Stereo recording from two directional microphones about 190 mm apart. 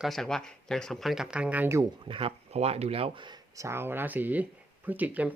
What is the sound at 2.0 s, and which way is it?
Speech, 30° right (ahead or behind).